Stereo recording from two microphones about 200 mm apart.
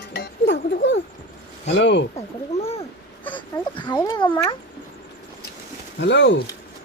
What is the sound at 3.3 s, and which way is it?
Speech, 25° left (ahead or behind).